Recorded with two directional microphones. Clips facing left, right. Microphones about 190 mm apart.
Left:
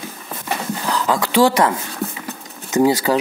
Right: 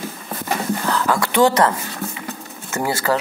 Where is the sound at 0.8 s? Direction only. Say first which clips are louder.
Left 3 dB; 15° left (ahead or behind).